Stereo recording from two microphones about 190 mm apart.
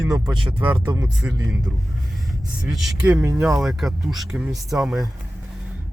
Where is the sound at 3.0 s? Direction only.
15° right (ahead or behind).